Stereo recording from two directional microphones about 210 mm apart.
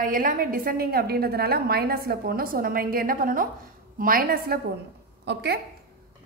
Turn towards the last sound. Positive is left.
turn(degrees=-50)  # may be behind; listen again after turning